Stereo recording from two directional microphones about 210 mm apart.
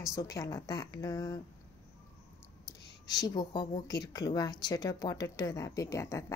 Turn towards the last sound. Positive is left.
turn(degrees=15)  # may be behind; listen again after turning